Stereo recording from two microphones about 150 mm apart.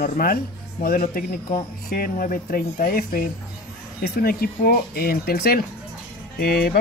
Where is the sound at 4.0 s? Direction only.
90° left.